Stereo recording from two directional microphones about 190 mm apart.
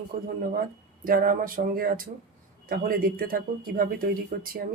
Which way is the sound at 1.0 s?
50° right (ahead or behind).